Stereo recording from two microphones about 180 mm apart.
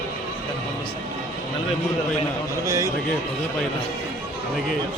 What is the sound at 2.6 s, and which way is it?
Speech, 15° right (ahead or behind).